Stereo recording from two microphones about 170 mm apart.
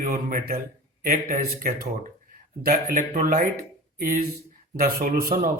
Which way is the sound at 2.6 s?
65° right (ahead or behind).